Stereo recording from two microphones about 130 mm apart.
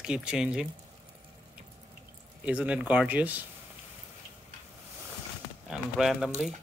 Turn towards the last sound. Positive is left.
turn(degrees=-5)  # may be behind; listen again after turning